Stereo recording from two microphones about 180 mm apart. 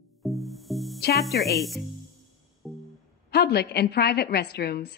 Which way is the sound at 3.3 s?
65° left (ahead or behind).